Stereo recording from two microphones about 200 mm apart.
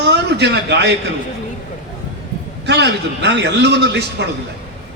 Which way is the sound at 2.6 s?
60° right (ahead or behind).